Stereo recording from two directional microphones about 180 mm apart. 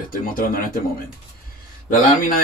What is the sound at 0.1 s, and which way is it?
A man's voice, 50° left (ahead or behind).